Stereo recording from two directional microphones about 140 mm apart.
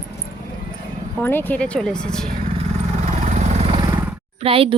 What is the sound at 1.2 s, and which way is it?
Speech, 15° left (ahead or behind).